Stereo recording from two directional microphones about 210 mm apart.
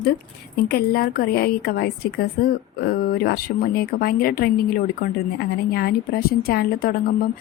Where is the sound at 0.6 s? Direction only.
45° left (ahead or behind).